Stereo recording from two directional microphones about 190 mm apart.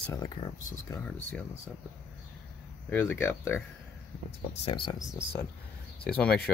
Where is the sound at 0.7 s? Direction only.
15° left (ahead or behind).